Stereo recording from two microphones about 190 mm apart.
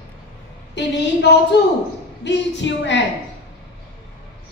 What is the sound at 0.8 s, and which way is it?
A woman's voice, 65° left (ahead or behind).